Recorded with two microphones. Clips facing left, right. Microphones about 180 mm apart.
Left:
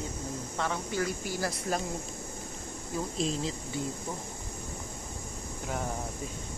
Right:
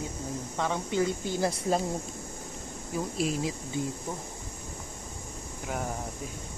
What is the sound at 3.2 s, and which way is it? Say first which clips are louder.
Speech: right 2 dB; 10° right (ahead or behind).